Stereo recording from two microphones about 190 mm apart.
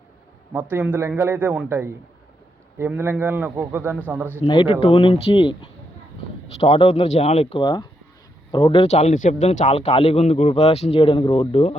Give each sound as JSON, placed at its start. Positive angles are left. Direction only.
{"t": 0.5, "sound": "a man's voice", "side_deg": -10}
{"t": 4.4, "sound": "speech", "side_deg": 25}
{"t": 6.6, "sound": "speech", "side_deg": 30}